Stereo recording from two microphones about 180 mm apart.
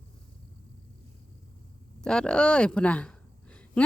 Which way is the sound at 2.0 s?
5° left (ahead or behind).